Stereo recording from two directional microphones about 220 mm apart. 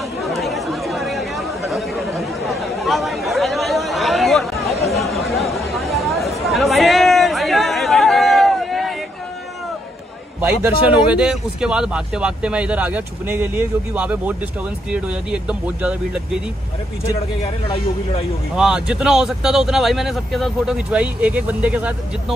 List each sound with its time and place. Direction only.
0.2 s chatter: centre (ahead or behind)
10.4 s speech: 5° right (ahead or behind)
17.4 s speech: 25° left (ahead or behind)
18.6 s speech: 5° right (ahead or behind)